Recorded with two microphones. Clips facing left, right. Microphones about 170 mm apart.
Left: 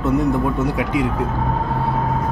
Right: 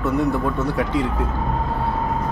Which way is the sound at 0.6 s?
10° left (ahead or behind).